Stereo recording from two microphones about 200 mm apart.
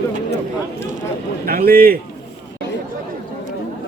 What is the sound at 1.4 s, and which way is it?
Speech, 45° right (ahead or behind).